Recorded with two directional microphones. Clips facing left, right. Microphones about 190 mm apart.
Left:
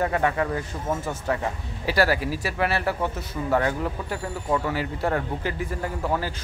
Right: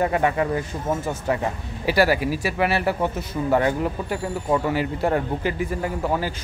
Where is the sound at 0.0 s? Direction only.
15° right (ahead or behind).